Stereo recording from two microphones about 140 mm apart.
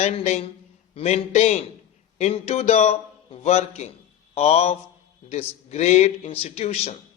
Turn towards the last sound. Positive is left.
turn(degrees=45)  # may be behind; listen again after turning